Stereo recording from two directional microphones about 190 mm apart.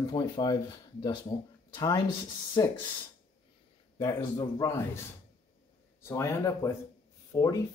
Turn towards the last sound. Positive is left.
turn(degrees=15)  # may be behind; listen again after turning